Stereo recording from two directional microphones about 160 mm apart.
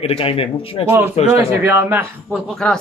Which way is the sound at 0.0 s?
35° left (ahead or behind).